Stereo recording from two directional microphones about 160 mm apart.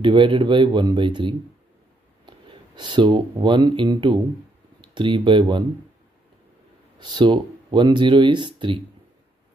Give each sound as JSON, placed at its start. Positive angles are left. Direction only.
{"t": 0.0, "sound": "speech", "side_deg": -30}
{"t": 7.0, "sound": "speech", "side_deg": -30}